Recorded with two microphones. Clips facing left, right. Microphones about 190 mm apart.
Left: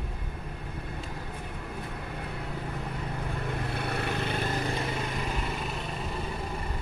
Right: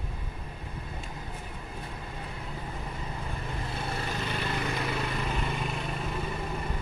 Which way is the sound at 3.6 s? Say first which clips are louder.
Left 1 dB; 60° left (ahead or behind).